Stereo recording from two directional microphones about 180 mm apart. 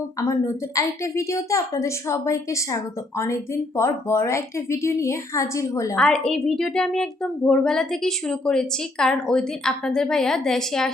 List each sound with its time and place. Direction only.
0.2 s a woman's voice: 20° left (ahead or behind)
6.0 s speech: 5° left (ahead or behind)